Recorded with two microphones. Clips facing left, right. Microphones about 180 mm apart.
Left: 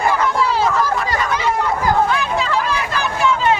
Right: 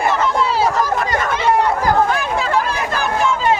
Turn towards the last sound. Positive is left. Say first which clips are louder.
# right 1 dB
turn(degrees=-50)  # may be behind; listen again after turning